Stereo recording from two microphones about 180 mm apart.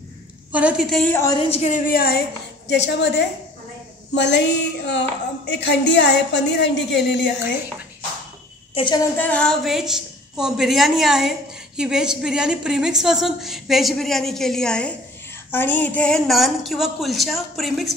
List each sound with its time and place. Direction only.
0.5 s a woman's voice: 5° right (ahead or behind)
1.1 s a woman's voice: 15° left (ahead or behind)
1.4 s a woman's voice: 35° left (ahead or behind)
1.9 s speech: 60° left (ahead or behind)
2.7 s a woman's voice: 75° left (ahead or behind)
8.7 s a woman's voice: 25° left (ahead or behind)
9.1 s a woman's voice: 10° left (ahead or behind)